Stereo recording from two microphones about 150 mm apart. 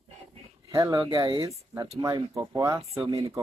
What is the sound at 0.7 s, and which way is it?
Speech, 20° right (ahead or behind).